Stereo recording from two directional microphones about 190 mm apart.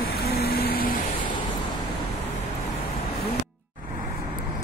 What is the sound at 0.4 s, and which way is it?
Vehicle, 55° left (ahead or behind).